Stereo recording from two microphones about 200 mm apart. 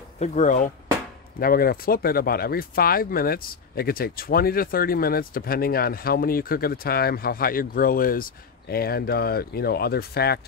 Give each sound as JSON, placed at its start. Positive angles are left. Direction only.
{"t": 0.2, "sound": "speech", "side_deg": 40}